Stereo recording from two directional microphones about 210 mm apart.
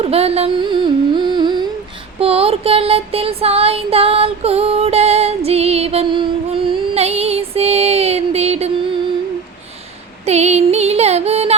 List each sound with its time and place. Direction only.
0.0 s music: 30° right (ahead or behind)
10.2 s music: 30° right (ahead or behind)